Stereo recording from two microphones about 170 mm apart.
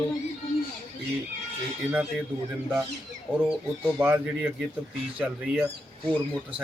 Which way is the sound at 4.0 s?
10° right (ahead or behind).